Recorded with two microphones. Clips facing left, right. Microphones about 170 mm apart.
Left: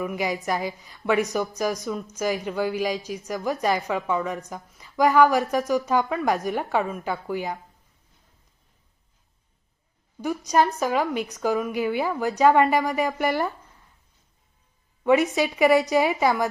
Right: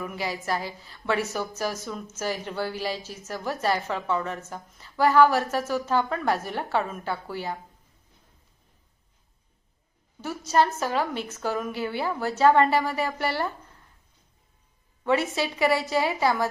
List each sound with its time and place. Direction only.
0.0 s a woman's voice: 20° left (ahead or behind)
10.2 s a woman's voice: 15° left (ahead or behind)
15.0 s a woman's voice: 20° left (ahead or behind)